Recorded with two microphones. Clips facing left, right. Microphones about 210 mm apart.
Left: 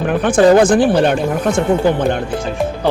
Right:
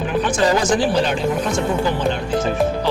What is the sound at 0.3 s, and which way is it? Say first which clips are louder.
Speech: left 10 dB; 55° left (ahead or behind).